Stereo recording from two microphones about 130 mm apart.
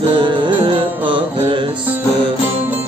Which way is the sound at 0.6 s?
40° right (ahead or behind).